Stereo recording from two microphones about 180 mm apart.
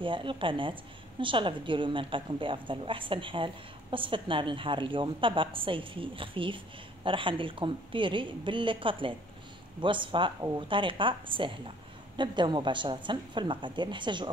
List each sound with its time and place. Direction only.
0.0 s a woman's voice: 30° right (ahead or behind)